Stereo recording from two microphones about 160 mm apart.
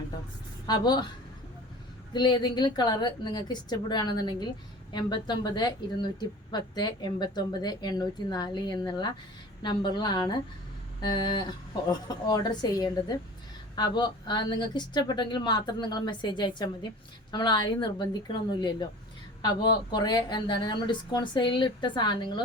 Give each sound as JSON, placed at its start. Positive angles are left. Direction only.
{"t": 0.7, "sound": "a woman's voice", "side_deg": 25}
{"t": 2.1, "sound": "a woman's voice", "side_deg": 25}